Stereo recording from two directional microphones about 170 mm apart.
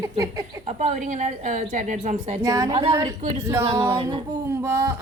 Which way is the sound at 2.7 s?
35° right (ahead or behind).